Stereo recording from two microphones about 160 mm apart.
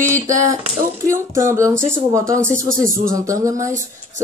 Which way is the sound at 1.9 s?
20° right (ahead or behind).